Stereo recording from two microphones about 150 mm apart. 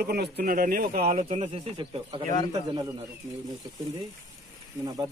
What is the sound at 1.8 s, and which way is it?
Speech, 35° right (ahead or behind).